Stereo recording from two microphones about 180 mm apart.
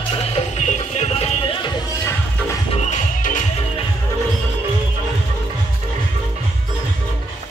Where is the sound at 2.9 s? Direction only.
45° left (ahead or behind).